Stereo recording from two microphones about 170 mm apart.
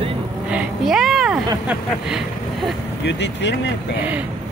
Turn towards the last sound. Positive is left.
turn(degrees=90)